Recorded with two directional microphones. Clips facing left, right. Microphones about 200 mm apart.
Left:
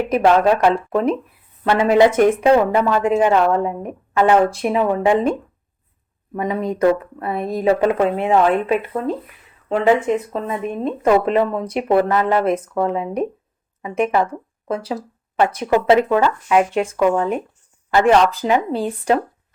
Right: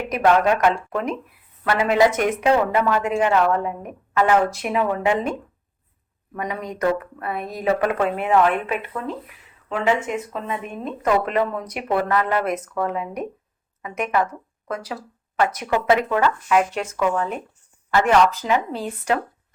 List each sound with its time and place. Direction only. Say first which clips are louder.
0.1 s a woman's voice: left 3 dB; 30° left (ahead or behind)